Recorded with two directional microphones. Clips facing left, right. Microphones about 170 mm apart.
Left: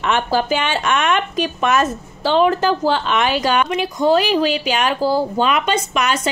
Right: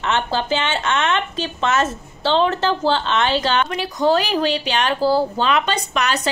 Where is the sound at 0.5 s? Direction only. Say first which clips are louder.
Left 2 dB; 25° right (ahead or behind).